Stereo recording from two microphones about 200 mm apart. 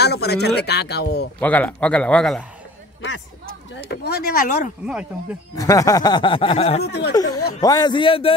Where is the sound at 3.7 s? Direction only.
55° left (ahead or behind).